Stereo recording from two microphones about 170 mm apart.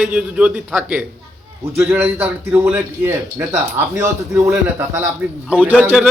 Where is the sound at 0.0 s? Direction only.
5° right (ahead or behind).